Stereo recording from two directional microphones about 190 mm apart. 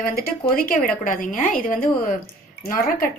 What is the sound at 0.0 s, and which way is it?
A woman's voice, 50° left (ahead or behind).